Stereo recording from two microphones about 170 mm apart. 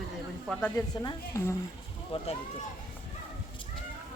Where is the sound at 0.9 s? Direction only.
25° left (ahead or behind).